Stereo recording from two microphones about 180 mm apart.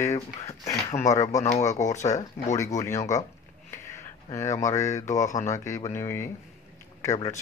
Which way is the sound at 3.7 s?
15° left (ahead or behind).